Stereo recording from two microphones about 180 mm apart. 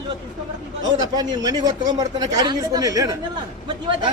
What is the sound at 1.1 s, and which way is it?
Speech, 20° right (ahead or behind).